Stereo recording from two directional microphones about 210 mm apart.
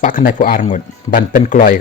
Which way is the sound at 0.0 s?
40° left (ahead or behind).